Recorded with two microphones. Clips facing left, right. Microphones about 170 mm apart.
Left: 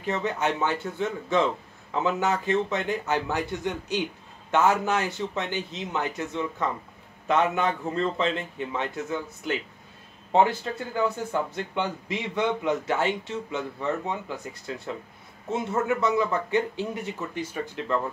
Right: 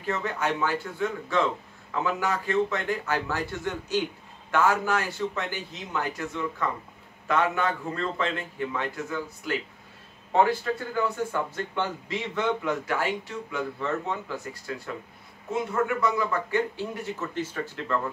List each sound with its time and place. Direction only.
0.0 s speech: 20° left (ahead or behind)